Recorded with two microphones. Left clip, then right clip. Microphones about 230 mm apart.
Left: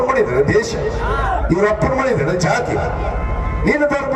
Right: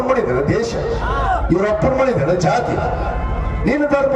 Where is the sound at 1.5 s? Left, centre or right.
Left.